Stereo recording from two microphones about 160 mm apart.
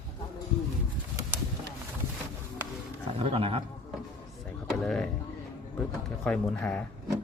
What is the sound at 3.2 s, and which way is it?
Speech, 35° right (ahead or behind).